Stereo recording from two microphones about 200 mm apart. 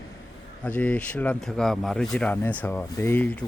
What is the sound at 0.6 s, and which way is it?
Speech, 5° left (ahead or behind).